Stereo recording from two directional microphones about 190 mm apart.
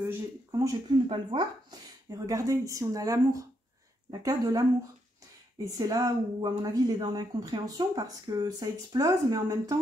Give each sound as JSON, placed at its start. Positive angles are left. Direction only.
{"t": 0.0, "sound": "speech", "side_deg": -15}
{"t": 5.8, "sound": "speech", "side_deg": -20}